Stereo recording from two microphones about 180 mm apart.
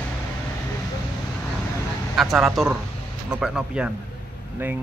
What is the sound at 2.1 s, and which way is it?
A man's voice, centre (ahead or behind).